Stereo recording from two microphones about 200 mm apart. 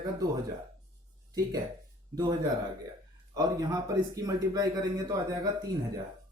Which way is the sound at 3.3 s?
15° right (ahead or behind).